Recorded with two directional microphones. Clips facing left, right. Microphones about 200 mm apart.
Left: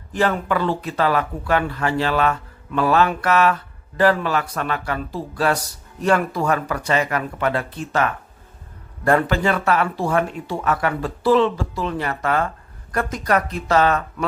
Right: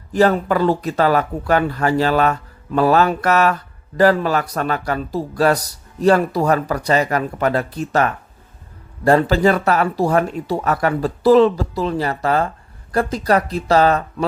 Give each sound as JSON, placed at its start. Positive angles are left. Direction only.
{"t": 0.1, "sound": "speech", "side_deg": -40}